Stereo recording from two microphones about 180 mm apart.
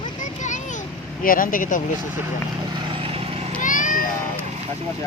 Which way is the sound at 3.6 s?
45° left (ahead or behind).